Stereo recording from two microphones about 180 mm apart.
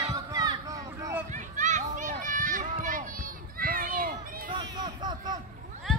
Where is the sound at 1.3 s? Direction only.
45° right (ahead or behind).